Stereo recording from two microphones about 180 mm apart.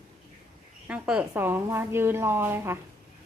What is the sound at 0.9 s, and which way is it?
A woman's voice, 5° right (ahead or behind).